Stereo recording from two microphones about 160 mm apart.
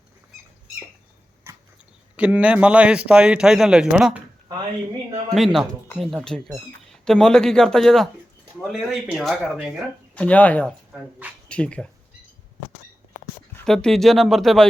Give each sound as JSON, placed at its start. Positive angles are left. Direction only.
{"t": 1.5, "sound": "a sound", "side_deg": -15}
{"t": 2.1, "sound": "a man's voice", "side_deg": -10}
{"t": 5.3, "sound": "speech", "side_deg": 0}
{"t": 10.2, "sound": "speech", "side_deg": 10}
{"t": 13.7, "sound": "speech", "side_deg": 5}